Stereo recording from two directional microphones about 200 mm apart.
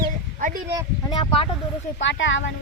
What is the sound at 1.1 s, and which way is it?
Speech, 25° left (ahead or behind).